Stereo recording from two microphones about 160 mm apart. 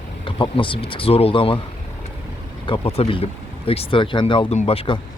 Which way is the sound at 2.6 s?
35° left (ahead or behind).